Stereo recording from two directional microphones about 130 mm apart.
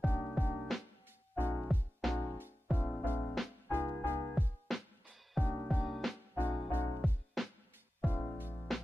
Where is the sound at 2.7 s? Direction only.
15° left (ahead or behind).